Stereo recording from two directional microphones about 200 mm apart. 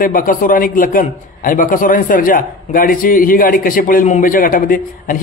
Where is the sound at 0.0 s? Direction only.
45° left (ahead or behind).